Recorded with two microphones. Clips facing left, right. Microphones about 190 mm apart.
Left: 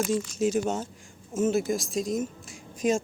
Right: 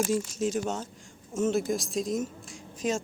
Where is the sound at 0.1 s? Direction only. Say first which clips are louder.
Left 2 dB; centre (ahead or behind).